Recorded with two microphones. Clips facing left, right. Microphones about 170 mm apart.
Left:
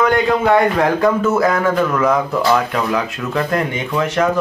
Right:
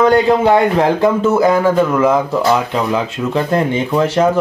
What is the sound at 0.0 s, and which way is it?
Speech, 30° right (ahead or behind).